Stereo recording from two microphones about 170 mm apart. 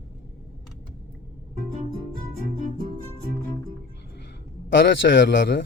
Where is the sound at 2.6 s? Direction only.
50° right (ahead or behind).